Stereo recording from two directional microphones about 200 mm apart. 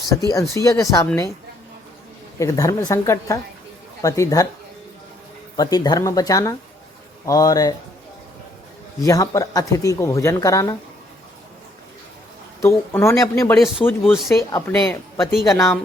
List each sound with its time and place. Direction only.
0.1 s speech: 15° left (ahead or behind)
2.4 s speech: 15° left (ahead or behind)
5.5 s speech: 20° left (ahead or behind)
9.0 s speech: 15° left (ahead or behind)
12.6 s speech: 15° left (ahead or behind)
14.0 s speech: centre (ahead or behind)
14.3 s speech: 15° left (ahead or behind)
14.8 s speech: centre (ahead or behind)
15.5 s speech: 15° left (ahead or behind)